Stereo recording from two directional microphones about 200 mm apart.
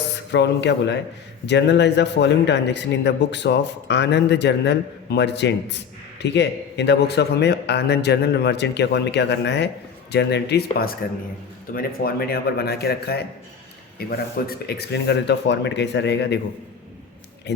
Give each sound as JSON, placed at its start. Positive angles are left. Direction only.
{"t": 0.3, "sound": "a man's voice", "side_deg": 60}